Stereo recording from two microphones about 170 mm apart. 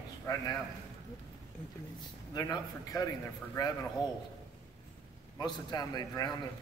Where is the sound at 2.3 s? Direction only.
20° left (ahead or behind).